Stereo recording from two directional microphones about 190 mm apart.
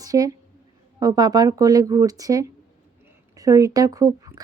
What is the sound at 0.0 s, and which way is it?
A woman's voice, 20° right (ahead or behind).